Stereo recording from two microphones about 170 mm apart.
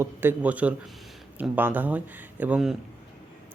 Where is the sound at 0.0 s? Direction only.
15° right (ahead or behind).